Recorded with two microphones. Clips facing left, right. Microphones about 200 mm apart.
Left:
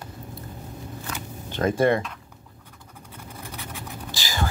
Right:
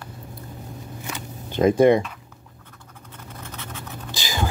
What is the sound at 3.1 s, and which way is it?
Vehicle, 10° left (ahead or behind).